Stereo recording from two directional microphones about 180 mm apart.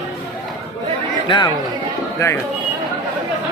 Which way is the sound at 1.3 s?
25° left (ahead or behind).